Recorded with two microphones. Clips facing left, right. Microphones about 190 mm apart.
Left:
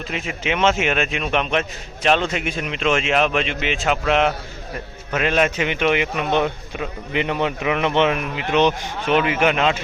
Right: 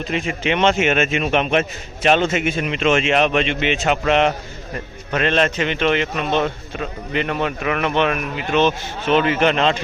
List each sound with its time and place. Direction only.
0.1 s a man's voice: 5° left (ahead or behind)